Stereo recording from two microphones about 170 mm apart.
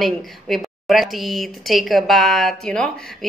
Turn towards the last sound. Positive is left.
turn(degrees=5)  # may be behind; listen again after turning